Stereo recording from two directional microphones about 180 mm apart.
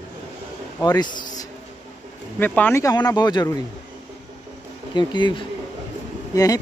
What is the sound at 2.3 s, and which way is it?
Speech, 10° left (ahead or behind).